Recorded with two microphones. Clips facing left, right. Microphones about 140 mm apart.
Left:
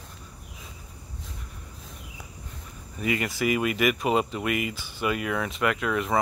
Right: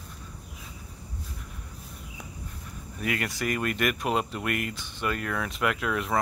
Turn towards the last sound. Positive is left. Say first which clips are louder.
# left 2 dB
turn(degrees=0)  # may be behind; listen again after turning